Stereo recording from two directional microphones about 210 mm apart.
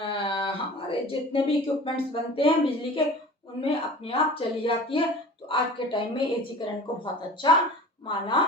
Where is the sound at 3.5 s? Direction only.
25° left (ahead or behind).